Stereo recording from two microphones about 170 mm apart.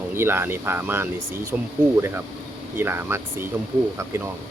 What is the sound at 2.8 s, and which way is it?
Speech, 15° right (ahead or behind).